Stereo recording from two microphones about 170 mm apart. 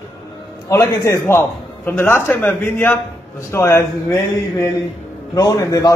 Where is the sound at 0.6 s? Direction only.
15° left (ahead or behind).